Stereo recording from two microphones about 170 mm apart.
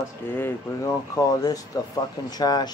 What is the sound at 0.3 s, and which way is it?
Speech, 15° left (ahead or behind).